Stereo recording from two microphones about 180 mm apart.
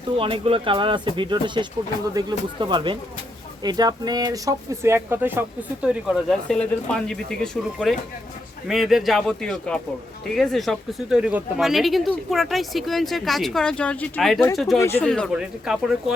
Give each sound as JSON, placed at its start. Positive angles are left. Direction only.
{"t": 0.2, "sound": "speech", "side_deg": -30}
{"t": 14.8, "sound": "speech", "side_deg": 15}